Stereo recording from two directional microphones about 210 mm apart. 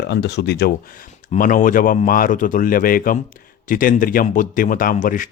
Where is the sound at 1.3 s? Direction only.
40° left (ahead or behind).